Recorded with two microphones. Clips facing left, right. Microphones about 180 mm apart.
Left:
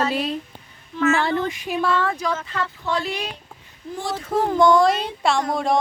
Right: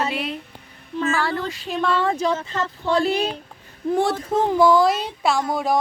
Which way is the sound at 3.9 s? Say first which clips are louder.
Right 8 dB; 65° right (ahead or behind).